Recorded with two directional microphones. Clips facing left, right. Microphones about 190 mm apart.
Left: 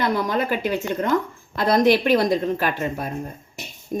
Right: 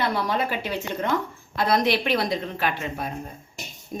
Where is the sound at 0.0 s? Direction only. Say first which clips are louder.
Left 3 dB; 45° left (ahead or behind).